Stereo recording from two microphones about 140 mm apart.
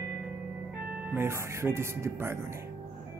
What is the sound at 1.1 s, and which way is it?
Speech, 20° right (ahead or behind).